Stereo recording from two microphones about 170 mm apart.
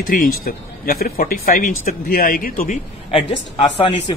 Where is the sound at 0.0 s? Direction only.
60° left (ahead or behind).